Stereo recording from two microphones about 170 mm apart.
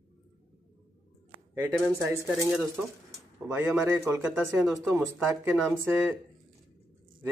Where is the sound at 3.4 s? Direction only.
10° right (ahead or behind).